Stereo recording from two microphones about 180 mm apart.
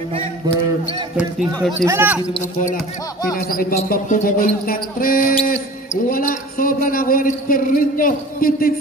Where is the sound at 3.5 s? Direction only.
55° left (ahead or behind).